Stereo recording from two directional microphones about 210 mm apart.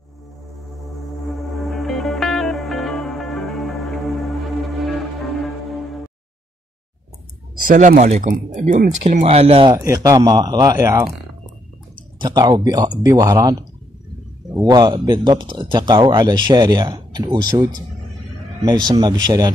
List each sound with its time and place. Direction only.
1.3 s music: centre (ahead or behind)
7.6 s speech: 40° right (ahead or behind); by 11.1 s 15° right (ahead or behind)
12.2 s speech: 20° right (ahead or behind)